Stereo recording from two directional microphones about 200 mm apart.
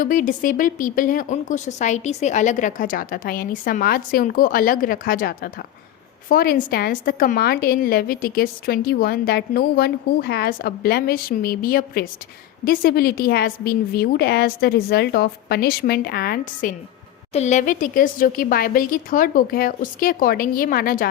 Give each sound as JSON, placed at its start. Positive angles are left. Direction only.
{"t": 0.0, "sound": "a woman's voice", "side_deg": 45}
{"t": 17.3, "sound": "a woman's voice", "side_deg": 35}